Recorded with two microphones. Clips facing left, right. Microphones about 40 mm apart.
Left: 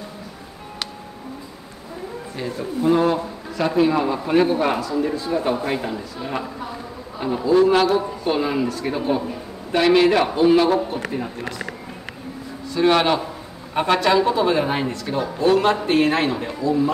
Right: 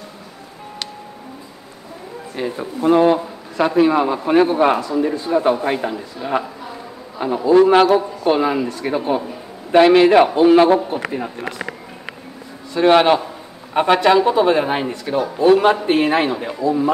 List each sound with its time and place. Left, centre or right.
2.3 s a man's voice: right
7.5 s a man's voice: right
11.1 s speech: centre
11.4 s speech: right
12.7 s speech: centre